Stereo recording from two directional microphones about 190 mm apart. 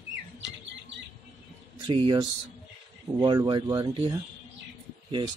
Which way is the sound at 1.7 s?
25° right (ahead or behind).